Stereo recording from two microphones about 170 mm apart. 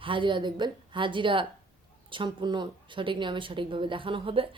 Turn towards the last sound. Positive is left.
turn(degrees=-30)  # may be behind; listen again after turning